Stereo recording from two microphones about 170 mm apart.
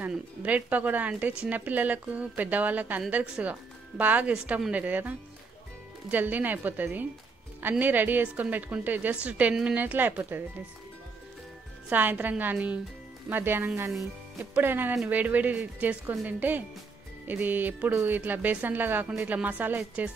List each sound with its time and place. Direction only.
0.0 s speech: 10° right (ahead or behind)
11.9 s speech: 10° right (ahead or behind)